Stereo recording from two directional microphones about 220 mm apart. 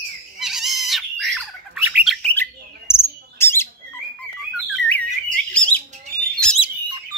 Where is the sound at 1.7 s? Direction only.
5° right (ahead or behind); by 3.7 s 10° left (ahead or behind).